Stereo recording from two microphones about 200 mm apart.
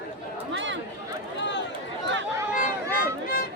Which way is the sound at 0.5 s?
65° right (ahead or behind).